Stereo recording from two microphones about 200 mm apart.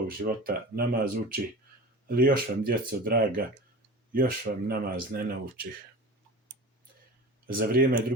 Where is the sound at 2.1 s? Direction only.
45° right (ahead or behind).